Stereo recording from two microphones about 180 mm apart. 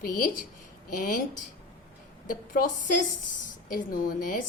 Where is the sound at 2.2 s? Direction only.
50° left (ahead or behind).